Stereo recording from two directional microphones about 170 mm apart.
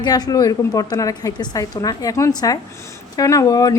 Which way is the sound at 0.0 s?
25° left (ahead or behind).